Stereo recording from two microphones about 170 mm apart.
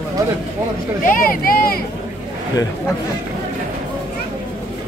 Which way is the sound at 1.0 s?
55° left (ahead or behind).